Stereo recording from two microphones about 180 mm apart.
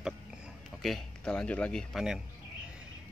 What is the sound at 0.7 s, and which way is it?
Speech, centre (ahead or behind).